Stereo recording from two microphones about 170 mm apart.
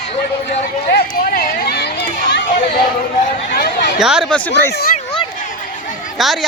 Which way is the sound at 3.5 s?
55° left (ahead or behind).